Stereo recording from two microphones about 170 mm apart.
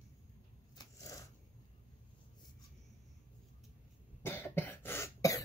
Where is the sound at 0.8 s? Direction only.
20° left (ahead or behind).